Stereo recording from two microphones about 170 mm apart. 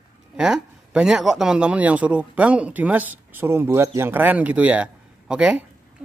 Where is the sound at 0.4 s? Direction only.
5° right (ahead or behind).